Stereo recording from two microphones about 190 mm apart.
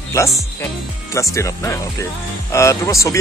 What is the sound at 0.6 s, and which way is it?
Speech, 15° left (ahead or behind).